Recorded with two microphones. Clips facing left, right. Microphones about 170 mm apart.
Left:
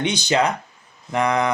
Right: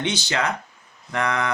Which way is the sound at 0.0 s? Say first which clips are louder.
Left 5 dB; 15° left (ahead or behind).